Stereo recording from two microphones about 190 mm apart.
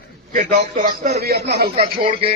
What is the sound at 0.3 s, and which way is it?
A man's voice, 50° right (ahead or behind).